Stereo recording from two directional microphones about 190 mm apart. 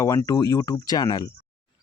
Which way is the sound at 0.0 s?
15° left (ahead or behind).